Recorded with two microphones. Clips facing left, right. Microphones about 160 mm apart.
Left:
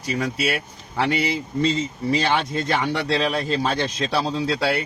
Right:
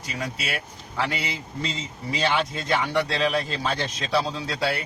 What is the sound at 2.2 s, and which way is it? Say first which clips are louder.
Speech: left 3 dB; 50° left (ahead or behind).